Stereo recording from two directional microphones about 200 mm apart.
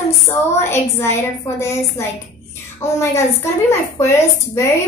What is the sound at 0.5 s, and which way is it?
A woman's voice, 15° left (ahead or behind).